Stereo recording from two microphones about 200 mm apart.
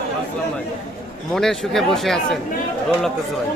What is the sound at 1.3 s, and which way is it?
A man's voice, centre (ahead or behind).